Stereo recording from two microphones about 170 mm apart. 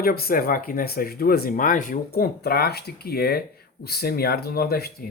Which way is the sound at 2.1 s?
65° left (ahead or behind).